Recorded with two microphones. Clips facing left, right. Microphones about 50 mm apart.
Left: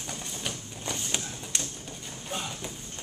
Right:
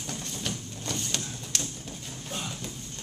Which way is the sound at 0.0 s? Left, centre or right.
Centre.